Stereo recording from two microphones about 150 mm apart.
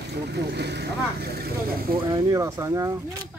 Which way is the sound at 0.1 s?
90° right.